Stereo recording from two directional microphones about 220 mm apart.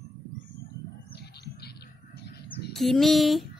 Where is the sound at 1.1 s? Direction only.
45° left (ahead or behind).